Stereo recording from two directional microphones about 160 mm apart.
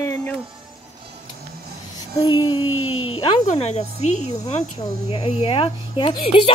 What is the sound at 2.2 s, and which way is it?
Speech, 30° left (ahead or behind).